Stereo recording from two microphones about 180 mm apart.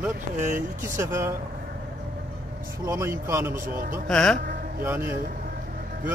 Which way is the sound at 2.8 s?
15° right (ahead or behind).